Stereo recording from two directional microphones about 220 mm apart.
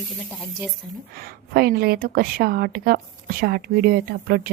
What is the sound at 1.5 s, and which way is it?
A woman's voice, 45° right (ahead or behind).